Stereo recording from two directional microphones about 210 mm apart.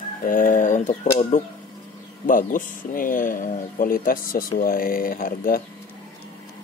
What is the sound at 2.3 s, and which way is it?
Speech, 40° left (ahead or behind).